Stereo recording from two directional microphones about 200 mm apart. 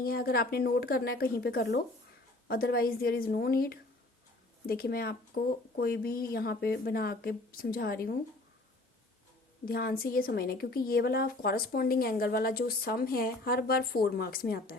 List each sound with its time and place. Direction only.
0.0 s a woman's voice: 50° left (ahead or behind)
9.6 s a woman's voice: 45° left (ahead or behind)